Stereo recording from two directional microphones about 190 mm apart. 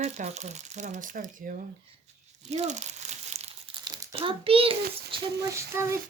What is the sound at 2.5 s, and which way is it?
Crumpling, 35° right (ahead or behind).